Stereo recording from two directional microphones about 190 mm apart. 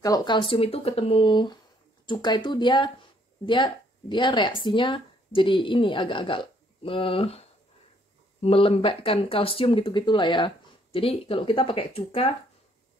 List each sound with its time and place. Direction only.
0.0 s speech: 20° left (ahead or behind)